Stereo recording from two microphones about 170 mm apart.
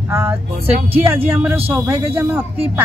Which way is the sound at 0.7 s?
35° right (ahead or behind).